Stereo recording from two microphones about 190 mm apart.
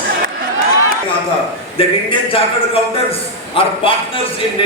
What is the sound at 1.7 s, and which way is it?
A man's voice, 30° left (ahead or behind).